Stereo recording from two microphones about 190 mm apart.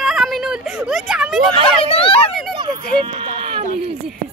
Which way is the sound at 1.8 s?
30° left (ahead or behind).